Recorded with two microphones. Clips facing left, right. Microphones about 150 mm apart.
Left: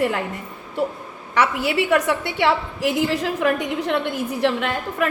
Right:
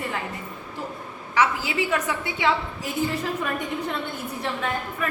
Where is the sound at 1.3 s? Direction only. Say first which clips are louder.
Left 3 dB; 65° left (ahead or behind).